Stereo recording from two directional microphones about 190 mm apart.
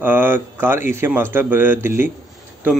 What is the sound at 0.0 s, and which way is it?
Speech, 10° right (ahead or behind).